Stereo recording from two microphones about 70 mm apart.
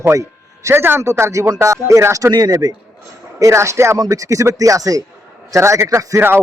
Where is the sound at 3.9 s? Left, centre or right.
Right.